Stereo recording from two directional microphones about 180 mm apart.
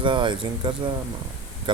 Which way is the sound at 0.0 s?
25° right (ahead or behind).